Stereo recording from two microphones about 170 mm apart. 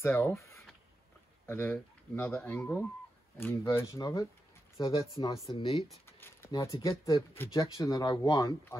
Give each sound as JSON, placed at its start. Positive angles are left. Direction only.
{"t": 0.0, "sound": "speech", "side_deg": 15}
{"t": 6.0, "sound": "a sound", "side_deg": 15}
{"t": 6.5, "sound": "speech", "side_deg": 20}